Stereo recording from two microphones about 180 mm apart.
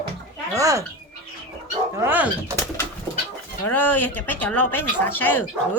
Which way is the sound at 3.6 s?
10° left (ahead or behind).